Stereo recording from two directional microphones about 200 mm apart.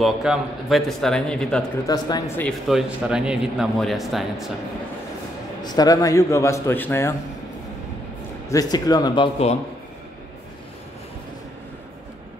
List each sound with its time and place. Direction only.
0.0 s speech: centre (ahead or behind)
1.9 s a man's voice: 20° left (ahead or behind)
2.7 s speech: 5° right (ahead or behind)
5.6 s a man's voice: 20° left (ahead or behind)
8.5 s a man's voice: 20° left (ahead or behind)